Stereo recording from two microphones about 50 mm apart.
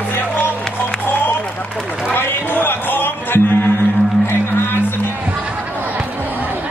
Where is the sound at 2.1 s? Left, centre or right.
Left.